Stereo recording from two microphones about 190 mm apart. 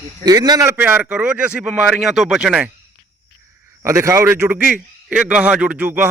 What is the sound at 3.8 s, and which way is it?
A man's voice, 15° right (ahead or behind).